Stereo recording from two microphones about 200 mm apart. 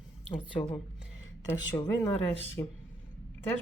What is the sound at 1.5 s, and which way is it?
Speech, 15° left (ahead or behind).